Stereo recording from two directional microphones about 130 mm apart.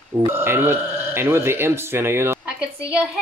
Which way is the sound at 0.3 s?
15° right (ahead or behind).